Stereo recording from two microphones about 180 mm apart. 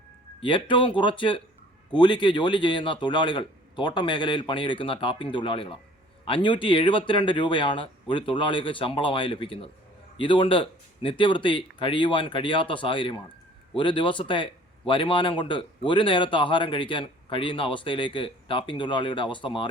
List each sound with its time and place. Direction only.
0.3 s speech: 25° left (ahead or behind)